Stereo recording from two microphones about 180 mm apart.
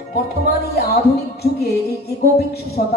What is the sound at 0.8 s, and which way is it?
A man's voice, 65° left (ahead or behind).